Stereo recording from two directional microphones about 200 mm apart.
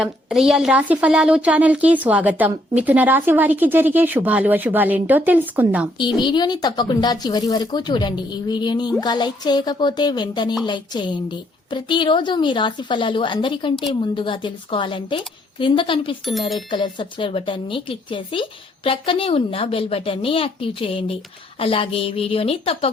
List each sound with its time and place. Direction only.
0.0 s speech: centre (ahead or behind)
6.1 s speech: 20° left (ahead or behind)